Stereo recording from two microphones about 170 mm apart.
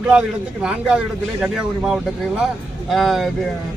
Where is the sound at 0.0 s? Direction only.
5° right (ahead or behind).